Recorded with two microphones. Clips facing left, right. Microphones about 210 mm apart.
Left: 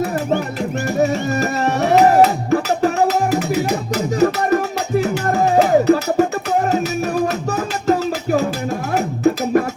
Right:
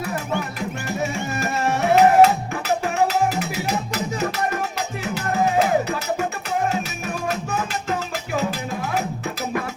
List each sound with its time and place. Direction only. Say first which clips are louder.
0.0 s music: left 7 dB; 50° left (ahead or behind)
1.0 s music: left 6 dB; 40° left (ahead or behind)
7.5 s music: left 7 dB; 40° left (ahead or behind)